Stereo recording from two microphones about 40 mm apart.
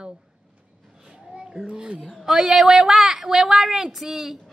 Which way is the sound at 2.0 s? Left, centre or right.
Centre.